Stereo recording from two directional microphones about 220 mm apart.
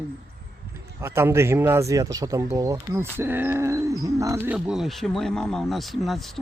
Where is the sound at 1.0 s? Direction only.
10° right (ahead or behind).